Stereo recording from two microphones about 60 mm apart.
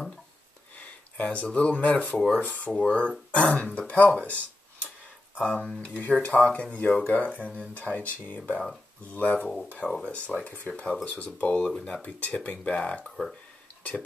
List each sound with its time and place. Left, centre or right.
0.7 s speech: left
5.4 s speech: centre
5.9 s speech: left
9.8 s speech: centre
10.1 s speech: left
10.7 s speech: centre